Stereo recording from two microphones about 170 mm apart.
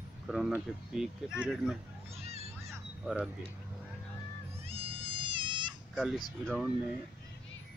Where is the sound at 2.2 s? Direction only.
40° right (ahead or behind).